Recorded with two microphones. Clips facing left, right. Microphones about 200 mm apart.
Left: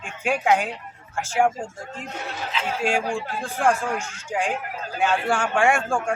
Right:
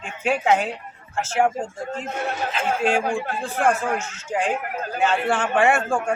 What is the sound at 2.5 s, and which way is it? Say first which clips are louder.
Speech: right 1 dB; 50° right (ahead or behind).